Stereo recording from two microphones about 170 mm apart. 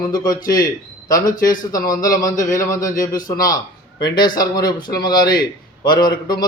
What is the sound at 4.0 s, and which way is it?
A man's voice, 25° left (ahead or behind).